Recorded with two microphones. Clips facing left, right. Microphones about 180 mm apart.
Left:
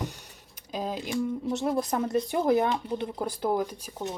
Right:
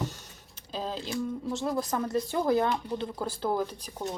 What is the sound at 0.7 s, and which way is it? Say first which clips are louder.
Speech: left 3 dB; 15° left (ahead or behind).